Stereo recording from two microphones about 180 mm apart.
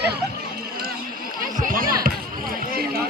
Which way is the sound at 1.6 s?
50° right (ahead or behind).